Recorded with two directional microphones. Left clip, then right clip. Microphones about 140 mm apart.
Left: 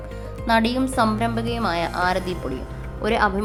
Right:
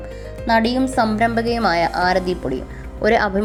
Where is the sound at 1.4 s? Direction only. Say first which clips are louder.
Right 6 dB; 35° right (ahead or behind).